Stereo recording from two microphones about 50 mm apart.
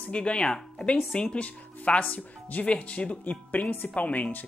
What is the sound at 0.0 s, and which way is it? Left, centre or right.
Speech, left.